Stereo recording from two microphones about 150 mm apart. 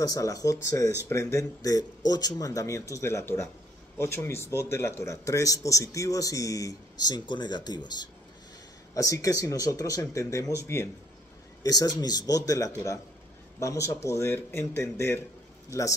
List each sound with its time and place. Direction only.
0.0 s a man's voice: 25° left (ahead or behind)